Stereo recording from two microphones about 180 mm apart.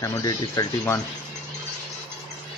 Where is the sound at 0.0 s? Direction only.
20° left (ahead or behind).